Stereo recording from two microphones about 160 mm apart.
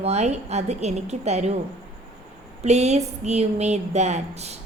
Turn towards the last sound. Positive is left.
turn(degrees=-45)  # may be behind; listen again after turning